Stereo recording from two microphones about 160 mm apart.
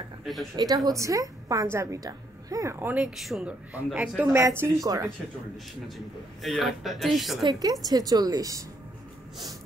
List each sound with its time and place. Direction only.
0.2 s speech: centre (ahead or behind)
0.6 s a woman's voice: 25° right (ahead or behind)
6.4 s speech: centre (ahead or behind)
7.4 s a woman's voice: 25° right (ahead or behind)